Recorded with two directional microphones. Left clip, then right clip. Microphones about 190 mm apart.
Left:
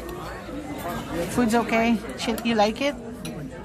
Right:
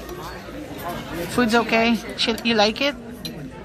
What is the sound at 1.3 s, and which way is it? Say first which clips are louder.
Speech: right 4 dB; centre (ahead or behind).